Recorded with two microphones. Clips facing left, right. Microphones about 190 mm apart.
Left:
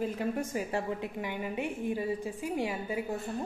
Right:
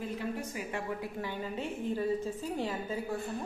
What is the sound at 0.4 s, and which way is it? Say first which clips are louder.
Speech: left 5 dB; 45° left (ahead or behind).